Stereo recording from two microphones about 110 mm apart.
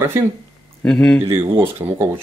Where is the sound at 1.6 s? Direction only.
20° right (ahead or behind).